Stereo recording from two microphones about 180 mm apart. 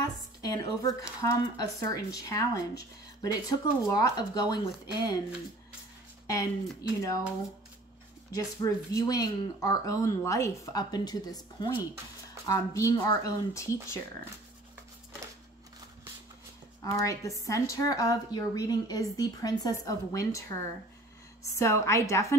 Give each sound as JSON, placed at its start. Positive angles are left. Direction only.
{"t": 0.0, "sound": "a woman's voice", "side_deg": 20}
{"t": 6.2, "sound": "a woman's voice", "side_deg": 20}
{"t": 8.5, "sound": "a woman's voice", "side_deg": 20}
{"t": 16.8, "sound": "a woman's voice", "side_deg": 20}
{"t": 21.5, "sound": "speech", "side_deg": 15}